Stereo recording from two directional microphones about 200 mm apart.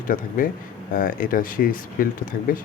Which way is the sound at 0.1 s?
45° left (ahead or behind).